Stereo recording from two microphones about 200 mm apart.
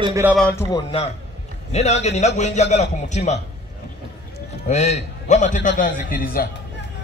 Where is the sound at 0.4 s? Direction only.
10° left (ahead or behind).